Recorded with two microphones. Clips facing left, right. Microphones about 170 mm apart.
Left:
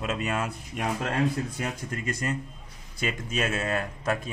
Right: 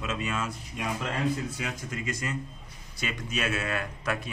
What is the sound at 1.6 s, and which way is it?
Speech, 50° left (ahead or behind).